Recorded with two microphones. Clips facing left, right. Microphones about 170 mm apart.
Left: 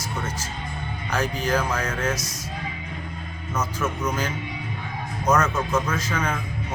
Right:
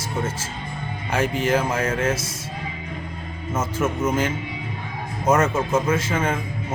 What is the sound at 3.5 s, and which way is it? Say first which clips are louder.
Speech: right 3 dB; 25° right (ahead or behind).